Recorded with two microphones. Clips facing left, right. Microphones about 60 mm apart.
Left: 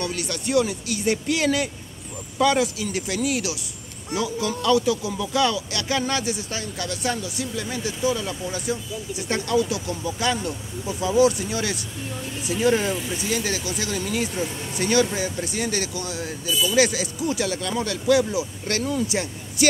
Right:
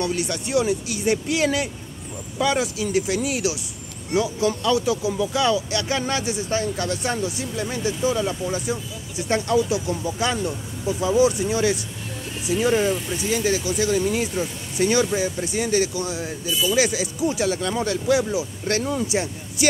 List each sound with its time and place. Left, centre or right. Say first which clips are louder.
0.0 s speech: right 3 dB; centre
6.5 s speech: right 6 dB; right
12.5 s speech: right 1 dB; centre; by 19.2 s right